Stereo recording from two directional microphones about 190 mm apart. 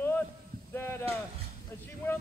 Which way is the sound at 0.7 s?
10° left (ahead or behind).